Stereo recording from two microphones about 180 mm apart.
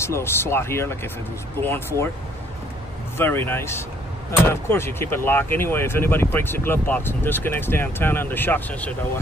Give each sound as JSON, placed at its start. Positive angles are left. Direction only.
{"t": 0.0, "sound": "speech", "side_deg": 15}
{"t": 3.2, "sound": "speech", "side_deg": 10}